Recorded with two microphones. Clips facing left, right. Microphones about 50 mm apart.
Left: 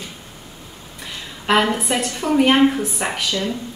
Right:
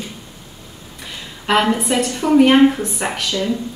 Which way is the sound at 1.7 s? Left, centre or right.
Centre.